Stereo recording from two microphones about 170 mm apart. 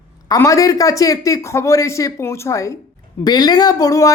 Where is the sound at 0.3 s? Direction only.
20° left (ahead or behind).